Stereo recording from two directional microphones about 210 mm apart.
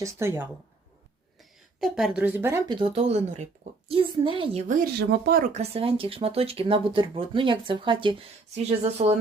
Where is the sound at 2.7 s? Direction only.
25° right (ahead or behind).